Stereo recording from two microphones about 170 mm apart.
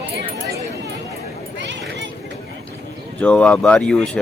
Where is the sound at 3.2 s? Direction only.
5° left (ahead or behind).